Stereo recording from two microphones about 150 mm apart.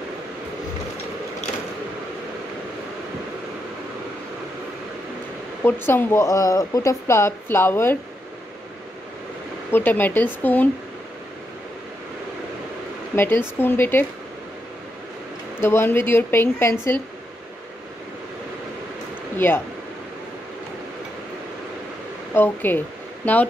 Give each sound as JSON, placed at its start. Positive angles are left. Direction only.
{"t": 5.6, "sound": "speech", "side_deg": 15}
{"t": 9.7, "sound": "speech", "side_deg": 15}
{"t": 13.1, "sound": "speech", "side_deg": 15}
{"t": 15.6, "sound": "speech", "side_deg": 15}
{"t": 19.3, "sound": "speech", "side_deg": 15}
{"t": 22.3, "sound": "speech", "side_deg": 15}